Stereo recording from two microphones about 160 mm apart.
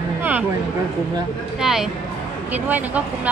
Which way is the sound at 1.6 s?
Centre (ahead or behind).